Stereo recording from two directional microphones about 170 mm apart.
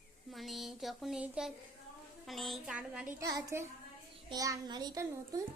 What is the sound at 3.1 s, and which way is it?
A woman's voice, 15° right (ahead or behind).